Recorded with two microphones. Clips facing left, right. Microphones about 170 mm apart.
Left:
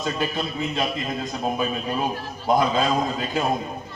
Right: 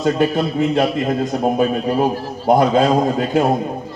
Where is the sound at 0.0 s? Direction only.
60° right (ahead or behind).